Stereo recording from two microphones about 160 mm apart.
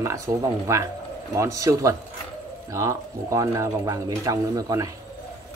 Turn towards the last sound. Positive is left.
turn(degrees=-20)  # may be behind; listen again after turning